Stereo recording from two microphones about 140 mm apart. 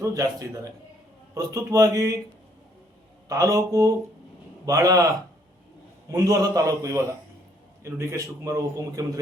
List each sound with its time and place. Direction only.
0.0 s a man's voice: 25° right (ahead or behind)
3.2 s a man's voice: 25° right (ahead or behind)